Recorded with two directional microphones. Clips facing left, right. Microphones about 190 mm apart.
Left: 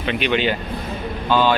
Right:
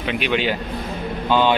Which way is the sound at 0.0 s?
5° right (ahead or behind).